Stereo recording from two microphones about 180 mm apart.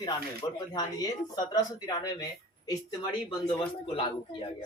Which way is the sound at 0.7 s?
20° left (ahead or behind).